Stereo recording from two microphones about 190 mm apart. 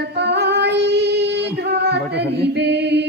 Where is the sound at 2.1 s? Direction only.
60° right (ahead or behind).